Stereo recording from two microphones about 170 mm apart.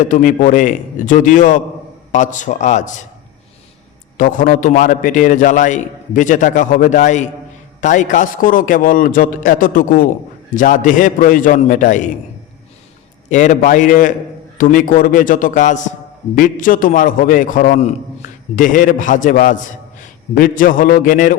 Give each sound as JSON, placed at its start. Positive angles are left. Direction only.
{"t": 0.0, "sound": "a man's voice", "side_deg": 50}
{"t": 4.2, "sound": "a man's voice", "side_deg": 50}
{"t": 13.3, "sound": "a man's voice", "side_deg": 45}